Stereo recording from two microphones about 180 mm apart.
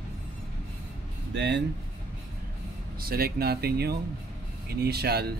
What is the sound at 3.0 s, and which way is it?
Speech, 55° right (ahead or behind).